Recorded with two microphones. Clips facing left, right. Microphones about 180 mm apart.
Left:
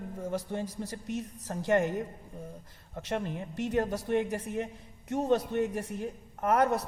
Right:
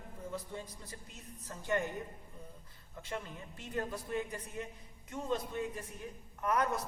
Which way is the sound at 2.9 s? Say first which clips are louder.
Left 9 dB; 75° left (ahead or behind).